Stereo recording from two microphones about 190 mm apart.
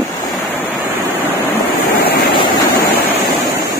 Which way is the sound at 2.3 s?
25° left (ahead or behind).